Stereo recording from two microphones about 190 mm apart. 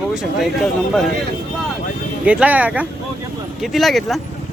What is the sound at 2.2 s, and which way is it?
Speech, 5° right (ahead or behind).